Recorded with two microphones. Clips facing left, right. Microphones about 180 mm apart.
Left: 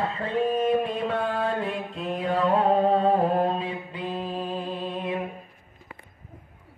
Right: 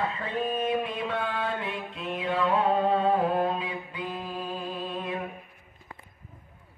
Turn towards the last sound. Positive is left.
turn(degrees=25)  # may be behind; listen again after turning